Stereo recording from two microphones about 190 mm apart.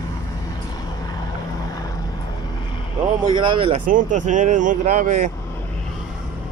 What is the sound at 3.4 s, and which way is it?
Speech, 25° right (ahead or behind).